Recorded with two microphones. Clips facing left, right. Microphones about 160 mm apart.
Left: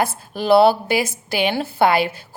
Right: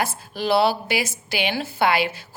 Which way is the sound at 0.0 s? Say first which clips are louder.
Left 3 dB; 50° left (ahead or behind).